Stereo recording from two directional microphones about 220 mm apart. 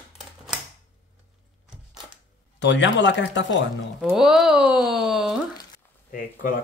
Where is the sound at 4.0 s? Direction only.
5° right (ahead or behind).